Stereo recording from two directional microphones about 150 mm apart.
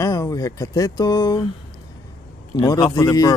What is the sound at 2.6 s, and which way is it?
Speech, 20° left (ahead or behind).